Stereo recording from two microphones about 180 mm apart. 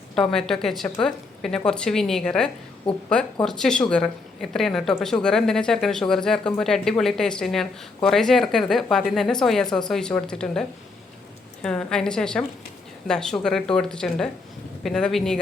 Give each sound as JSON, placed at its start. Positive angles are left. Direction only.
{"t": 0.2, "sound": "a woman's voice", "side_deg": 5}